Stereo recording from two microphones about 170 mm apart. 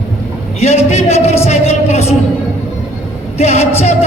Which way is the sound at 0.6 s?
40° left (ahead or behind).